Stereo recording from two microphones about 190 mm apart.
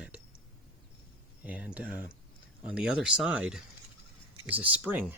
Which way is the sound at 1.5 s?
5° right (ahead or behind).